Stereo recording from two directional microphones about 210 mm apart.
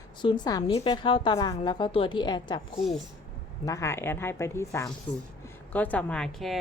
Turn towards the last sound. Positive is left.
turn(degrees=0)  # may be behind; listen again after turning